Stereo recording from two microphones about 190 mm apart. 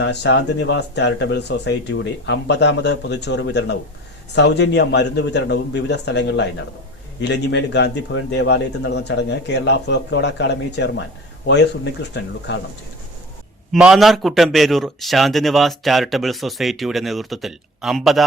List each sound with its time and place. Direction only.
0.0 s a man's voice: 65° left (ahead or behind)
13.7 s a man's voice: 5° right (ahead or behind)